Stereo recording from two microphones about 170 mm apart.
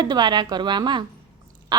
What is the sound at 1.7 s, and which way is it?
Duck, 25° right (ahead or behind).